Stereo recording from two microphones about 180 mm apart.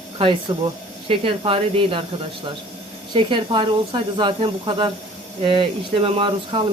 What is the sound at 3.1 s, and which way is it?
Speech, 25° right (ahead or behind).